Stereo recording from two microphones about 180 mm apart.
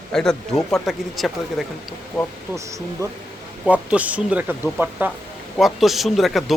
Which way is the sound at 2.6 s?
15° right (ahead or behind).